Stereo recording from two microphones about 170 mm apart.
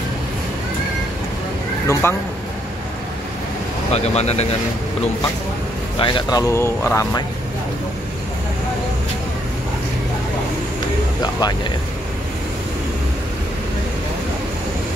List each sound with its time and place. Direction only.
1.9 s speech: 15° left (ahead or behind)
3.9 s speech: 40° left (ahead or behind)
5.9 s speech: 30° left (ahead or behind)